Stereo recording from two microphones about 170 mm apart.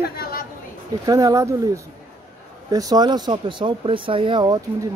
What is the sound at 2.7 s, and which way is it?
Speech, 20° right (ahead or behind).